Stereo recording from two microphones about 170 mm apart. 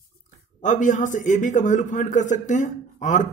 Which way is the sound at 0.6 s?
45° left (ahead or behind).